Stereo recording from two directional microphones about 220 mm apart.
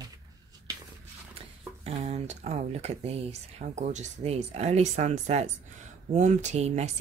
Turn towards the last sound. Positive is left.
turn(degrees=-30)  # may be behind; listen again after turning